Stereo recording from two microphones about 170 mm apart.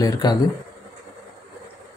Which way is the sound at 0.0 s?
20° left (ahead or behind).